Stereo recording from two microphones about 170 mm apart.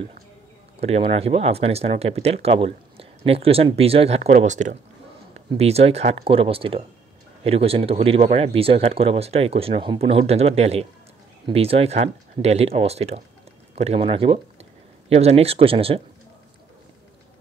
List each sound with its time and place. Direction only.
0.7 s speech: 40° right (ahead or behind)